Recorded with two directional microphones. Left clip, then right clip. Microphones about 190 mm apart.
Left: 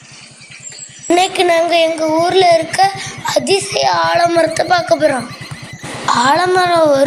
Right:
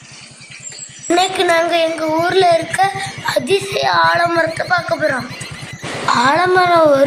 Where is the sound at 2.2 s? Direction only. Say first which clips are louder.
Left 2 dB; 20° left (ahead or behind).